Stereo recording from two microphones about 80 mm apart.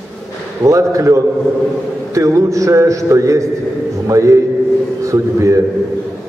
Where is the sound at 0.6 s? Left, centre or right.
Right.